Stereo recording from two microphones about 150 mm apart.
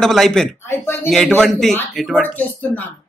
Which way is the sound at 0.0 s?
Centre (ahead or behind).